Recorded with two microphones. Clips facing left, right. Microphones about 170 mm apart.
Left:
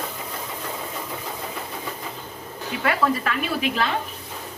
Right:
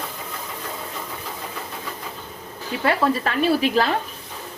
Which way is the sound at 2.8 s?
30° right (ahead or behind).